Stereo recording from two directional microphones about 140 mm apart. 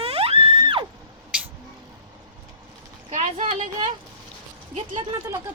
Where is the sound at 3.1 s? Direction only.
65° right (ahead or behind).